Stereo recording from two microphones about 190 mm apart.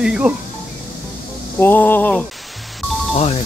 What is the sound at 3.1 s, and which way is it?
Speech, 35° left (ahead or behind).